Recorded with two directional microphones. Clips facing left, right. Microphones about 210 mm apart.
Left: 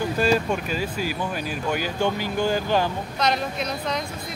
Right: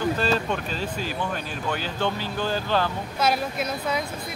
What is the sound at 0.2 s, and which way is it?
Speech, 10° left (ahead or behind).